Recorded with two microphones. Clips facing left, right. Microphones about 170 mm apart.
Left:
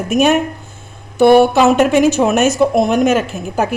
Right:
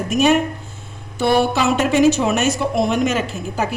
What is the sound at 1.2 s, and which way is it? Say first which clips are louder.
A woman's voice: left 8 dB; 55° left (ahead or behind).